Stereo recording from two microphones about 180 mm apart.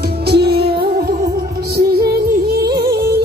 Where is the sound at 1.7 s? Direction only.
60° right (ahead or behind).